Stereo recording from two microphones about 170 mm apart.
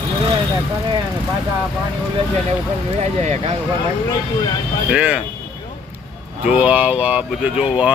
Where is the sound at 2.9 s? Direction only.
40° right (ahead or behind).